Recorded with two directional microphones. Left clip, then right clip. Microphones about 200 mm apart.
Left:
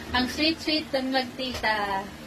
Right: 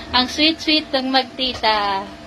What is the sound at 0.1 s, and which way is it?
A woman's voice, 20° right (ahead or behind).